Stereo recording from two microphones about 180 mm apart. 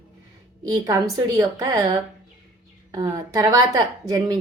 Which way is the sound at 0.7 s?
20° right (ahead or behind).